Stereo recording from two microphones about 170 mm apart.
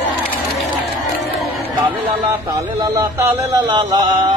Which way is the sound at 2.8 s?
20° right (ahead or behind).